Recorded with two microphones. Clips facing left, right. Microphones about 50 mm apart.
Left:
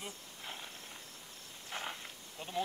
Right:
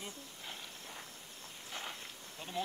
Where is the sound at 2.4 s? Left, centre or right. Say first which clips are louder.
Left 2 dB; centre.